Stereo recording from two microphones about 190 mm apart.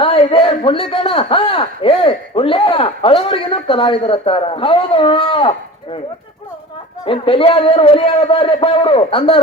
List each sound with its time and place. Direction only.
0.0 s a man's voice: 30° left (ahead or behind)
7.0 s a man's voice: 30° left (ahead or behind)